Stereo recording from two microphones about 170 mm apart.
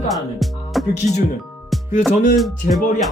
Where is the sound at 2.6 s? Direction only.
55° left (ahead or behind).